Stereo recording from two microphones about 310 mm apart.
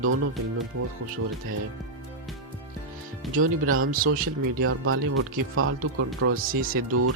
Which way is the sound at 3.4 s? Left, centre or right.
Right.